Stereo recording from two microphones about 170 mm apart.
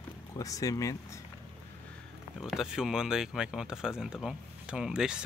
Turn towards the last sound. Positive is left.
turn(degrees=-5)  # may be behind; listen again after turning